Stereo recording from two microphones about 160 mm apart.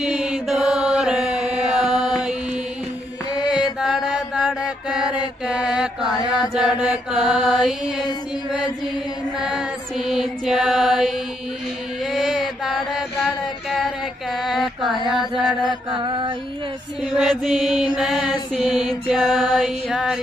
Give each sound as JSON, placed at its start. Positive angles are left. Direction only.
{"t": 0.0, "sound": "mantra", "side_deg": -5}
{"t": 1.5, "sound": "chant", "side_deg": -5}
{"t": 3.3, "sound": "mantra", "side_deg": 25}
{"t": 3.8, "sound": "mantra", "side_deg": -5}
{"t": 6.5, "sound": "mantra", "side_deg": -5}
{"t": 8.5, "sound": "chant", "side_deg": -5}
{"t": 9.4, "sound": "mantra", "side_deg": -5}
{"t": 12.1, "sound": "chant", "side_deg": -5}
{"t": 15.1, "sound": "mantra", "side_deg": 0}
{"t": 16.0, "sound": "music", "side_deg": -30}
{"t": 17.0, "sound": "mantra", "side_deg": 0}